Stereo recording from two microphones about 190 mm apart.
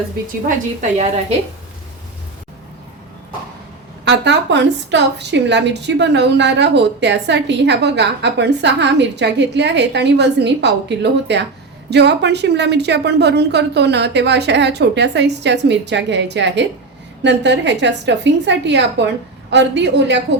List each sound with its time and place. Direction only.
0.4 s a woman's voice: 35° right (ahead or behind)
4.0 s a woman's voice: 65° right (ahead or behind)